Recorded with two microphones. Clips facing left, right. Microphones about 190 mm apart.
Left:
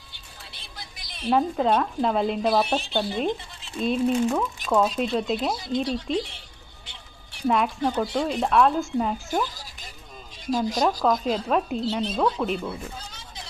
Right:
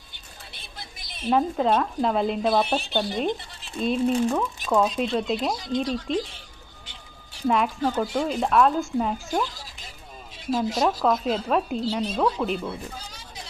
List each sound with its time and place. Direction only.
0.8 s a sound: 25° right (ahead or behind)
1.3 s speech: centre (ahead or behind)
7.4 s speech: centre (ahead or behind)
8.0 s speech: 15° left (ahead or behind)
8.3 s speech: centre (ahead or behind)